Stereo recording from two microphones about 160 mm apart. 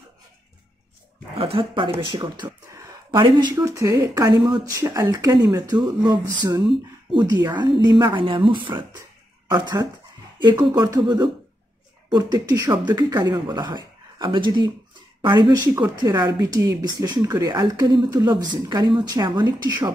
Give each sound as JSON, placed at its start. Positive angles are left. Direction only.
{"t": 1.4, "sound": "speech", "side_deg": -35}
{"t": 2.4, "sound": "a sound", "side_deg": -20}
{"t": 3.1, "sound": "speech", "side_deg": -30}